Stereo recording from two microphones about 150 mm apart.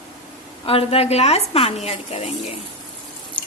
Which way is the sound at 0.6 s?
40° left (ahead or behind).